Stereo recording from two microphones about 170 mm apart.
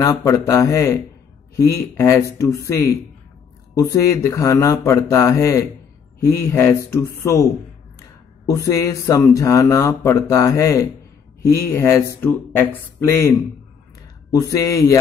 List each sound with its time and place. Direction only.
0.0 s speech: 20° left (ahead or behind)